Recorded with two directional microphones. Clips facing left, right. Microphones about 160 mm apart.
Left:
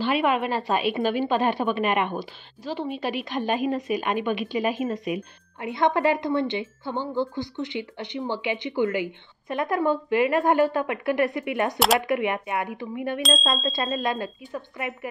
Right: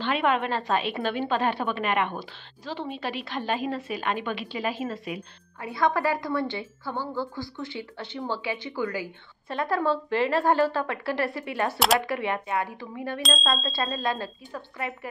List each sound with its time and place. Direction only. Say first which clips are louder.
0.0 s a woman's voice: left 2 dB; 10° left (ahead or behind)
13.2 s speech: left 1 dB; centre (ahead or behind)
13.6 s speech: left 3 dB; 20° left (ahead or behind)